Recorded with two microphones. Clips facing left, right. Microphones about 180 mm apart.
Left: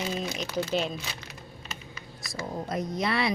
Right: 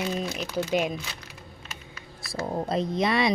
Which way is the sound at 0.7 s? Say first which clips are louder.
Right 4 dB; 15° right (ahead or behind).